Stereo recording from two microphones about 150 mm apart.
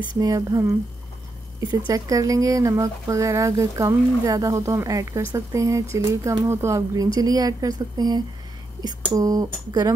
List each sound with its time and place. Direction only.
0.2 s speech: 25° right (ahead or behind)
1.9 s speech: 25° right (ahead or behind)